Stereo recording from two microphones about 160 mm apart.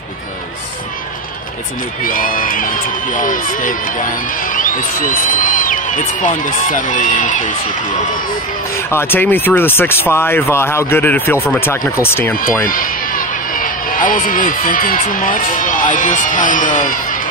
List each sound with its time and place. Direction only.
2.0 s a man's voice: 60° left (ahead or behind)
8.7 s speech: 15° left (ahead or behind)
12.6 s speech: 60° left (ahead or behind)